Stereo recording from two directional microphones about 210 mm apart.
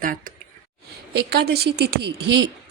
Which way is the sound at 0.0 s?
40° right (ahead or behind).